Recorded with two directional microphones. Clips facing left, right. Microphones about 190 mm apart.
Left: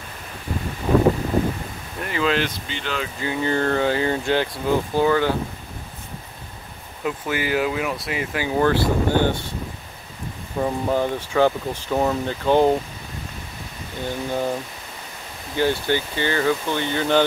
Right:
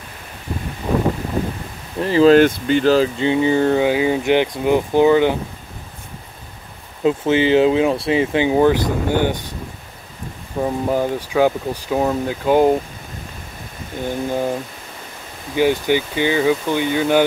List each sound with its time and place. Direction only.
2.0 s speech: 30° right (ahead or behind)
2.3 s speech: 50° right (ahead or behind)
3.2 s speech: 20° right (ahead or behind)
7.0 s speech: 25° right (ahead or behind)
10.6 s speech: 10° right (ahead or behind)
14.0 s speech: 15° right (ahead or behind)
15.5 s speech: 15° right (ahead or behind)